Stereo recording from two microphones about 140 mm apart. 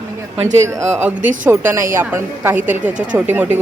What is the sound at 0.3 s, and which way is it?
Speech, 55° right (ahead or behind).